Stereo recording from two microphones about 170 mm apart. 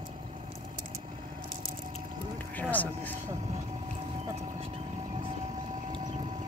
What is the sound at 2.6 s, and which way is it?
Speech, 10° left (ahead or behind).